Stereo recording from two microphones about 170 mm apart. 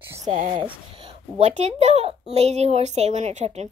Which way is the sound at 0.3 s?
45° right (ahead or behind).